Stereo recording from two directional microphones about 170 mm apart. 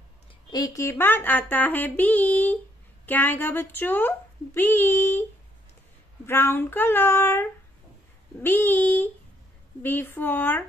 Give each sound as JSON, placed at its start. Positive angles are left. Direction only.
{"t": 0.5, "sound": "speech", "side_deg": 20}
{"t": 6.2, "sound": "speech", "side_deg": 15}